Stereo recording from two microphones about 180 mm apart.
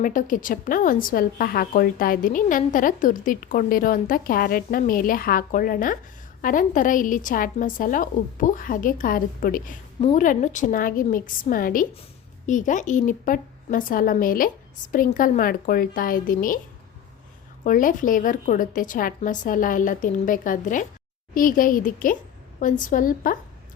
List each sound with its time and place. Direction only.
0.0 s a woman's voice: 45° left (ahead or behind)
17.6 s a woman's voice: 50° left (ahead or behind)